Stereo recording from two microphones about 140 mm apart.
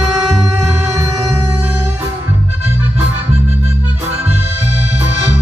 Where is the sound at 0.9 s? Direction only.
20° right (ahead or behind).